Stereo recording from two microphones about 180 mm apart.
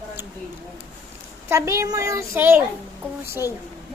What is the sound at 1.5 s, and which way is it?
A child's voice, 15° right (ahead or behind).